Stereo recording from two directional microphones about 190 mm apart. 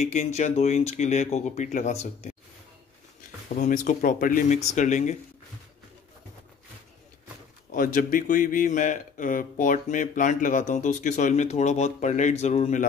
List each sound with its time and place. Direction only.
0.0 s speech: 35° left (ahead or behind)
3.4 s speech: 40° left (ahead or behind)
7.7 s speech: 45° left (ahead or behind)